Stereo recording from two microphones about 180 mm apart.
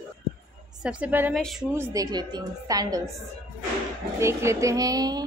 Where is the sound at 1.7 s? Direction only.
15° right (ahead or behind).